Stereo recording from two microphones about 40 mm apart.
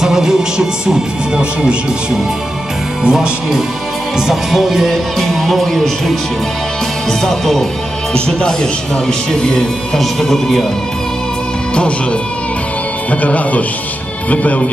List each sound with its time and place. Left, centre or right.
0.0 s speech: centre
3.0 s music: centre
4.3 s music: centre
7.1 s speech: centre
9.0 s speech: centre
9.9 s speech: centre
11.7 s speech: left
13.1 s speech: left